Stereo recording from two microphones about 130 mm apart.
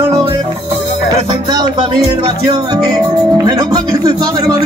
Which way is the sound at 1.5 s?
30° right (ahead or behind).